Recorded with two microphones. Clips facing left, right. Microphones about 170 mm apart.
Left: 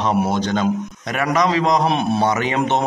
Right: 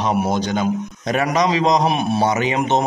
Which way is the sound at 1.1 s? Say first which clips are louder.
Even; 25° right (ahead or behind).